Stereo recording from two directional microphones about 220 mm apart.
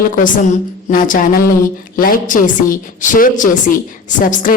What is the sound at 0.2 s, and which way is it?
A woman's voice, 40° left (ahead or behind).